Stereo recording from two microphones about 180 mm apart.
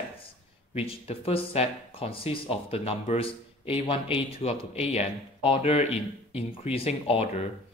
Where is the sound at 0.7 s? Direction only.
35° left (ahead or behind).